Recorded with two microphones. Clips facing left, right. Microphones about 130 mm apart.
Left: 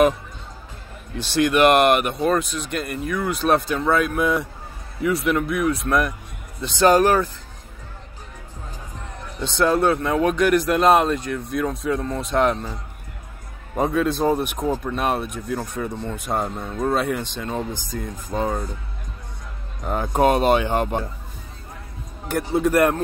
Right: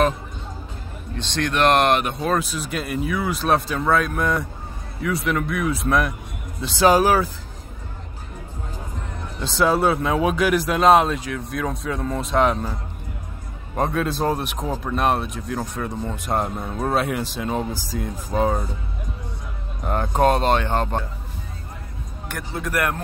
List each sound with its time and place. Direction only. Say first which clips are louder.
1.1 s speech: left 5 dB; 10° left (ahead or behind)
9.4 s speech: even; centre (ahead or behind)
13.7 s speech: left 2 dB; centre (ahead or behind)
16.4 s speech: left 1 dB; 10° right (ahead or behind)
19.8 s speech: even; centre (ahead or behind)
22.6 s speech: left 7 dB; 30° left (ahead or behind)